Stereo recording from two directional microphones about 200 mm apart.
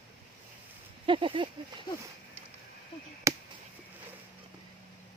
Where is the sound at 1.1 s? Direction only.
25° right (ahead or behind).